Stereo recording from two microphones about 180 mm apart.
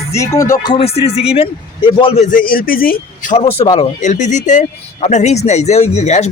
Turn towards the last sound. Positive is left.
turn(degrees=40)  # may be behind; listen again after turning